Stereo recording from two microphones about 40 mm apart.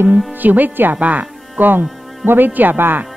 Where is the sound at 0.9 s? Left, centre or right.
Right.